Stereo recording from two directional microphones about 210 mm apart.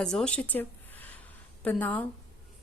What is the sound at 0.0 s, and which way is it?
A woman's voice, 5° left (ahead or behind).